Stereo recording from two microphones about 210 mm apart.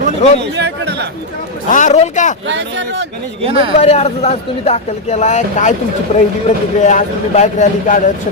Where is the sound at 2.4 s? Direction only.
60° right (ahead or behind).